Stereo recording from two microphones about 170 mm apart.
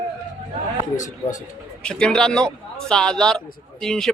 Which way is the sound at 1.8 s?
5° left (ahead or behind).